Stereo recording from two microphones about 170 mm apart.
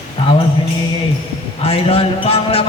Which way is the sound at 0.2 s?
35° left (ahead or behind).